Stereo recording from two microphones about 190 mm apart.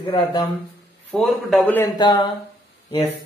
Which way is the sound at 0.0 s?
25° left (ahead or behind).